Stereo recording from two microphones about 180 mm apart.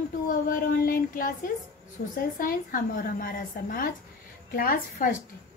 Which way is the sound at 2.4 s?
50° left (ahead or behind).